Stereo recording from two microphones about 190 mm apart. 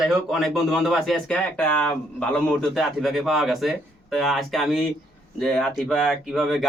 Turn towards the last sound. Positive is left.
turn(degrees=0)  # may be behind; listen again after turning